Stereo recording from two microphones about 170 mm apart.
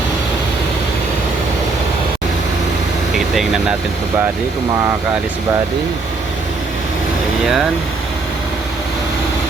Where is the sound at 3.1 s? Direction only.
Centre (ahead or behind).